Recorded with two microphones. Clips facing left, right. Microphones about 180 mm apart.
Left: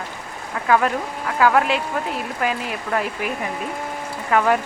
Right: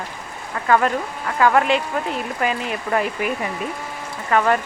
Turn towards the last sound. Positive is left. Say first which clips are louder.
# even
turn(degrees=5)  # may be behind; listen again after turning